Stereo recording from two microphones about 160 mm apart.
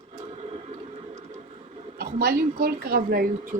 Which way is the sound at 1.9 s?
70° right (ahead or behind).